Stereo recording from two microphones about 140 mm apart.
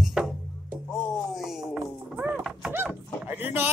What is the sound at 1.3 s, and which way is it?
Chop, centre (ahead or behind).